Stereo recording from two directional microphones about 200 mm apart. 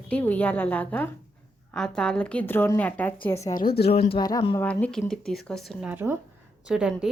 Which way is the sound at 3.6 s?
50° left (ahead or behind).